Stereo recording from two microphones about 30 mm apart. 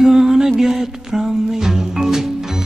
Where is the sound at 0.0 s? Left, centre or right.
Centre.